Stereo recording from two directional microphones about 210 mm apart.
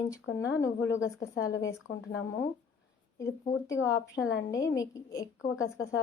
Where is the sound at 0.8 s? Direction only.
60° left (ahead or behind).